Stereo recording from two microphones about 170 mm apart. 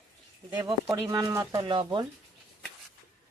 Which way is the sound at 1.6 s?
30° right (ahead or behind).